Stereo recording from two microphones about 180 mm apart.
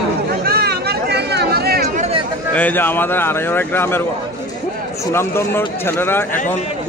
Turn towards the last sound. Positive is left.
turn(degrees=10)  # may be behind; listen again after turning